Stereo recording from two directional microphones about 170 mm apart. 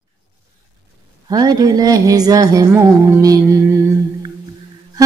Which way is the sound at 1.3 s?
20° right (ahead or behind).